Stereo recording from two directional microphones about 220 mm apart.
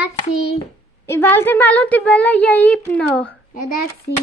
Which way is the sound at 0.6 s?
10° left (ahead or behind).